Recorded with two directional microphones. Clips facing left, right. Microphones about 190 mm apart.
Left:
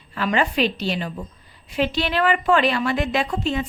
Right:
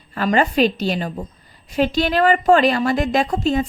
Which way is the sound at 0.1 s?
45° right (ahead or behind).